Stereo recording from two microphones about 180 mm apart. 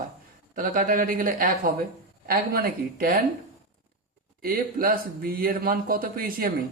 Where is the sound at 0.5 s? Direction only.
50° right (ahead or behind).